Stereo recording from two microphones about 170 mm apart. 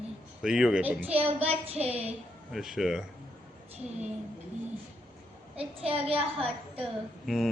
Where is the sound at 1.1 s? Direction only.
35° right (ahead or behind).